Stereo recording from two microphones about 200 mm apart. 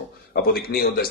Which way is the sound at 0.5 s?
50° left (ahead or behind).